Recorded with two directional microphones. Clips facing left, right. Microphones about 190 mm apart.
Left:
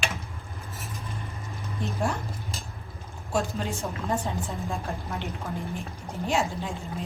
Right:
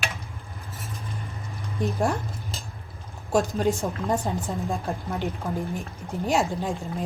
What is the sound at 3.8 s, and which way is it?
Speech, 15° right (ahead or behind).